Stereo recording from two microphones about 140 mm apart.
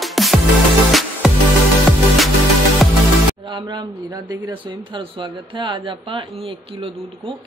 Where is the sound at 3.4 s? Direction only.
35° right (ahead or behind).